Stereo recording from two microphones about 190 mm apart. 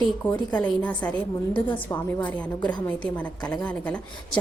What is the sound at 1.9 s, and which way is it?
Speech, 20° left (ahead or behind).